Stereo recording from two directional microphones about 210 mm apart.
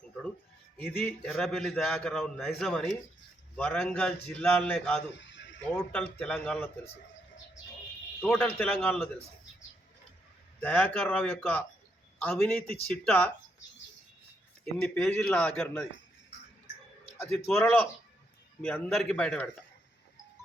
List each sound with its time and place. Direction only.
1.0 s a man's voice: 5° left (ahead or behind)
5.2 s a sound: 60° left (ahead or behind)
5.7 s a man's voice: 5° left (ahead or behind)
8.2 s a man's voice: 5° left (ahead or behind)
10.6 s a man's voice: 10° left (ahead or behind)
14.6 s a man's voice: 10° left (ahead or behind)
17.3 s a man's voice: 10° left (ahead or behind)